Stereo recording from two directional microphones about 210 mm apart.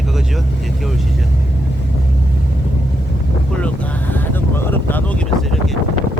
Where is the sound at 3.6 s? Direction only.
10° left (ahead or behind).